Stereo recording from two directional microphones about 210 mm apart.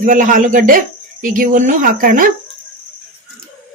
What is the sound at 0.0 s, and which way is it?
Speech, 40° right (ahead or behind).